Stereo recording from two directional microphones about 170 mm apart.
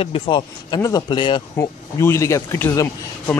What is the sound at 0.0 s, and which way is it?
Speech, 30° left (ahead or behind).